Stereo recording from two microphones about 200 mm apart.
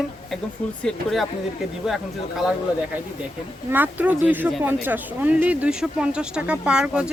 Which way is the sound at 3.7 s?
10° right (ahead or behind).